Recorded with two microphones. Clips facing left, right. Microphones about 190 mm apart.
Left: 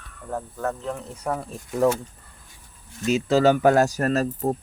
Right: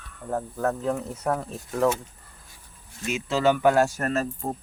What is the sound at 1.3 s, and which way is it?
Speech, 10° left (ahead or behind).